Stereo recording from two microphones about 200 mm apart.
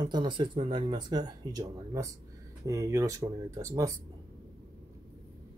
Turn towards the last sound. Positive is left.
turn(degrees=-15)  # may be behind; listen again after turning